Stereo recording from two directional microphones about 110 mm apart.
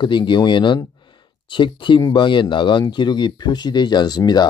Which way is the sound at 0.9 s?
45° left (ahead or behind).